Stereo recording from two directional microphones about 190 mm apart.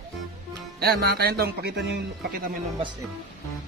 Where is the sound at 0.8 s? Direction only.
55° right (ahead or behind).